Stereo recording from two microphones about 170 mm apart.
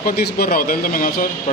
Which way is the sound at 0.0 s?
65° left (ahead or behind).